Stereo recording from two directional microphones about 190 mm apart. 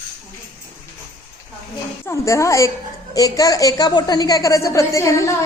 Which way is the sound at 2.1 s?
15° left (ahead or behind).